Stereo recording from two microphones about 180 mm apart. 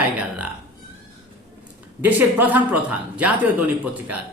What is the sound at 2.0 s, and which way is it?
Speech, 10° right (ahead or behind).